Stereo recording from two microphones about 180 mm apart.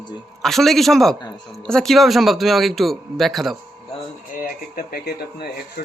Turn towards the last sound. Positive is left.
turn(degrees=60)  # may be behind; listen again after turning